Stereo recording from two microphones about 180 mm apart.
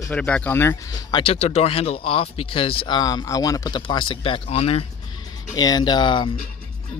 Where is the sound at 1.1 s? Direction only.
35° left (ahead or behind).